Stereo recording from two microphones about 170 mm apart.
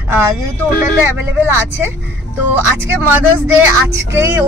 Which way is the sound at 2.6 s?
10° right (ahead or behind).